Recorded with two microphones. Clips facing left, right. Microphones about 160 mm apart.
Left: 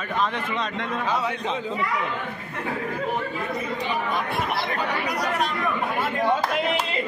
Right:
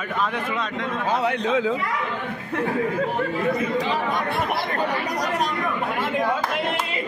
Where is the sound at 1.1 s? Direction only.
60° right (ahead or behind).